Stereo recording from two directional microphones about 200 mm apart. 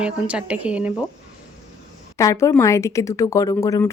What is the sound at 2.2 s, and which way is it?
Speech, 15° left (ahead or behind).